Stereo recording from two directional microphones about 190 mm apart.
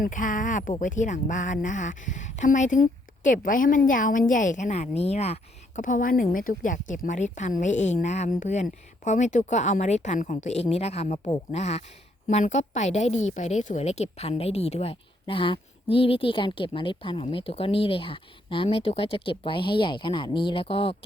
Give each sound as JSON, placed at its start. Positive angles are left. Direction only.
{"t": 0.0, "sound": "a woman's voice", "side_deg": 45}